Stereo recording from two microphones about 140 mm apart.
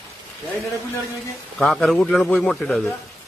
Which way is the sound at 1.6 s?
Centre (ahead or behind).